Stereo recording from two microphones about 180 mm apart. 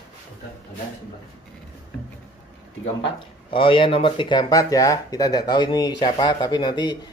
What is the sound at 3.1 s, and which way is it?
Speech, 30° left (ahead or behind).